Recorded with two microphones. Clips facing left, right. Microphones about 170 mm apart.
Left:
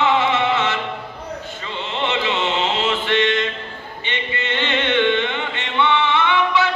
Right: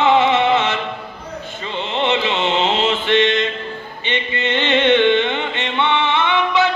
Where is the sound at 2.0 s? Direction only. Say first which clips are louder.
Right 2 dB; 20° right (ahead or behind).